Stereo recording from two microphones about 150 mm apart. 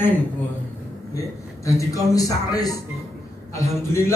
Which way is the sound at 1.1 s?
20° left (ahead or behind).